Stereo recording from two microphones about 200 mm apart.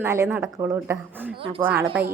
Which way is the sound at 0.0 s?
15° right (ahead or behind).